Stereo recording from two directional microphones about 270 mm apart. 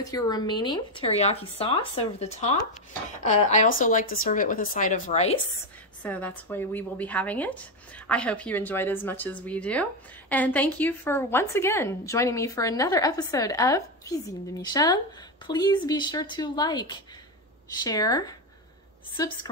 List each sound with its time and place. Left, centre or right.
0.0 s speech: centre
6.0 s a woman's voice: centre